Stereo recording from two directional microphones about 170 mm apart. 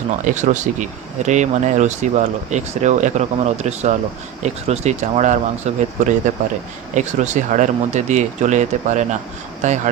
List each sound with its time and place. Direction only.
0.3 s speech: 45° right (ahead or behind)